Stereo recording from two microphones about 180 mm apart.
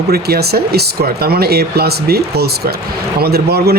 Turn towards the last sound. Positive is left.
turn(degrees=-60)  # may be behind; listen again after turning